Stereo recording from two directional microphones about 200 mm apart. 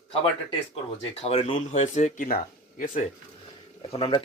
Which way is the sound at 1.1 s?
30° left (ahead or behind).